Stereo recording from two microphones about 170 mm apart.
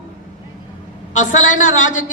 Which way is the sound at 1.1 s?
45° left (ahead or behind).